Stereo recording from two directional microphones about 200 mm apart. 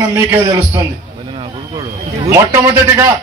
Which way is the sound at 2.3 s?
10° right (ahead or behind).